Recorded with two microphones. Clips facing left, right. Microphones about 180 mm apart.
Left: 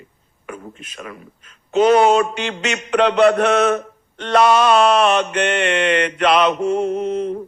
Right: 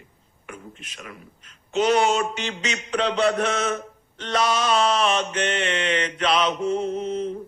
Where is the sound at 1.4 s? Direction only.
55° left (ahead or behind).